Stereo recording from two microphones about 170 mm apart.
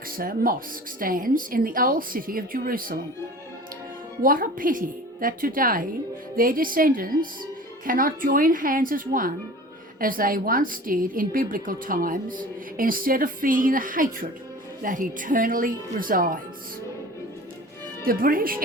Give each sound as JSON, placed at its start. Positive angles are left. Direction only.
{"t": 0.2, "sound": "a woman's voice", "side_deg": -60}
{"t": 4.2, "sound": "a woman's voice", "side_deg": -55}
{"t": 18.0, "sound": "a woman's voice", "side_deg": -60}